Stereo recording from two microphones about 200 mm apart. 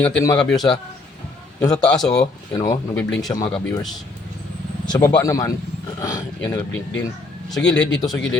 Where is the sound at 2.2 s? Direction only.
20° left (ahead or behind).